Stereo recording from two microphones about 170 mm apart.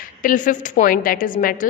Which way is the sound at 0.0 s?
55° left (ahead or behind).